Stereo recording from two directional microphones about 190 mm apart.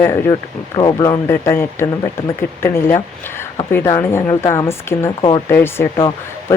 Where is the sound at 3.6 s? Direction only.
15° left (ahead or behind).